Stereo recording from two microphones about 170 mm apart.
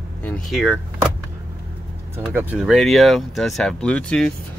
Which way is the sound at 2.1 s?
10° right (ahead or behind).